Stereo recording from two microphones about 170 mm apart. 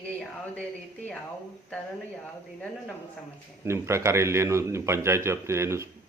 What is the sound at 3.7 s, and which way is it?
A man's voice, 15° right (ahead or behind).